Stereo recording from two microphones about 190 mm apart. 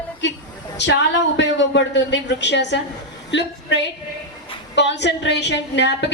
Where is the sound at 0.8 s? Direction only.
65° left (ahead or behind).